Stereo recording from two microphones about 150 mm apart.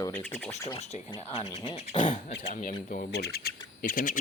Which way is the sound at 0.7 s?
45° left (ahead or behind).